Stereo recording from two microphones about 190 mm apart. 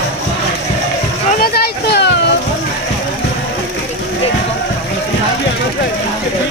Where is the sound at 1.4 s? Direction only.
55° left (ahead or behind).